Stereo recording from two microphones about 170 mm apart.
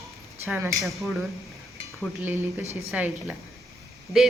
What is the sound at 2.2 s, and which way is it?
A woman's voice, 10° right (ahead or behind).